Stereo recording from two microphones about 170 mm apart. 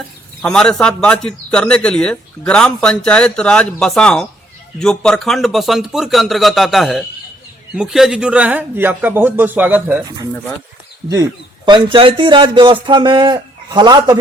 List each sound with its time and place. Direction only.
0.4 s a man's voice: 5° left (ahead or behind); by 14.2 s 25° right (ahead or behind)